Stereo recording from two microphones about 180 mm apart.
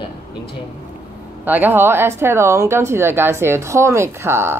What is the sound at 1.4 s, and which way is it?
Speech, 10° right (ahead or behind).